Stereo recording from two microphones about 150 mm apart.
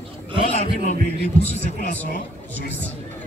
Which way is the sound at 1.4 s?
45° left (ahead or behind).